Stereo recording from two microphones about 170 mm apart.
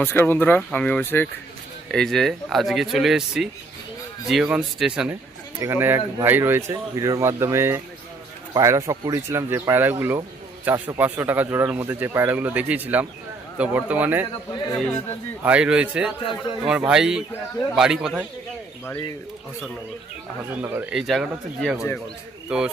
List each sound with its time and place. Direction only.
0.0 s speech: 10° left (ahead or behind); by 5.1 s 5° right (ahead or behind)
5.5 s speech: 15° right (ahead or behind)
15.4 s speech: 5° right (ahead or behind)
20.5 s speech: 10° right (ahead or behind)
20.9 s a man's voice: centre (ahead or behind)